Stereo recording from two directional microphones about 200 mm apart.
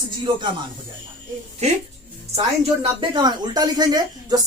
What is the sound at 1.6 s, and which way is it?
Speech, 35° right (ahead or behind).